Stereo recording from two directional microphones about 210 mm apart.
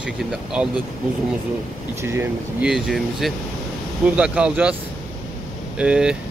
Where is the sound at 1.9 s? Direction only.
10° right (ahead or behind).